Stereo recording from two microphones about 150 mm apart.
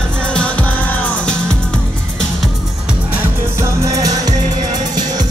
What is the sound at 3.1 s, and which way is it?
Music, 20° right (ahead or behind).